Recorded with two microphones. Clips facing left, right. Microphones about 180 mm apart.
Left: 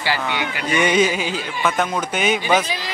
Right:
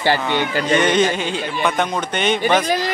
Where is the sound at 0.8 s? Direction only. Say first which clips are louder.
Right 1 dB; 10° left (ahead or behind).